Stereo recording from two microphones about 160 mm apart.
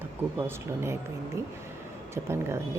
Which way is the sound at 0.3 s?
15° right (ahead or behind).